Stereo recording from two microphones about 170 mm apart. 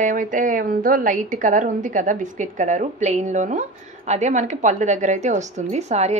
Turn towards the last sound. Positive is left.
turn(degrees=-40)  # may be behind; listen again after turning